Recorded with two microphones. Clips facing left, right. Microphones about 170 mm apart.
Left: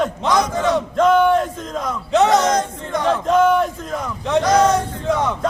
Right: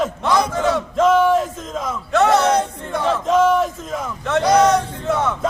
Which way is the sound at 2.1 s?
15° left (ahead or behind).